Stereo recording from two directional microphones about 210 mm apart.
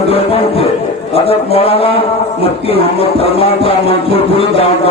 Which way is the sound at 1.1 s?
25° left (ahead or behind).